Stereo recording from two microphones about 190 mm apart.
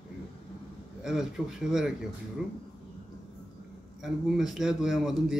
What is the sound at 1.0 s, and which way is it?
Speech, 5° right (ahead or behind).